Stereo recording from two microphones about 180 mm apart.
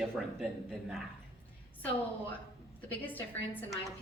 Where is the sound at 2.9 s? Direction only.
10° left (ahead or behind).